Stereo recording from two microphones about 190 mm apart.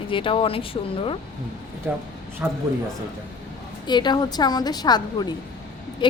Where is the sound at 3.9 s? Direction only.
25° left (ahead or behind).